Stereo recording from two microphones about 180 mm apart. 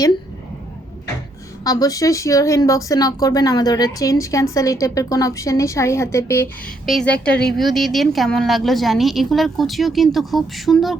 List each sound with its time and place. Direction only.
1.6 s a woman's voice: 20° left (ahead or behind)
6.8 s a woman's voice: 5° left (ahead or behind)